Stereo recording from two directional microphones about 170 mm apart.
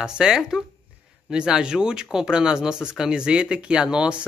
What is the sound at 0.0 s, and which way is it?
A woman's voice, 5° right (ahead or behind).